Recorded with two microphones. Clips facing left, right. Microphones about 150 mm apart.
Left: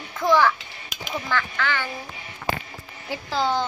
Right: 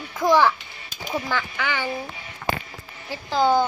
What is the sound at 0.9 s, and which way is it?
Duck, 80° left.